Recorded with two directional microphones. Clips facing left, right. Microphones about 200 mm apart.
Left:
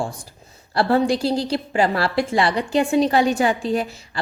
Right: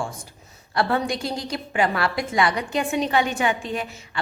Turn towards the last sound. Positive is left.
turn(degrees=35)  # may be behind; listen again after turning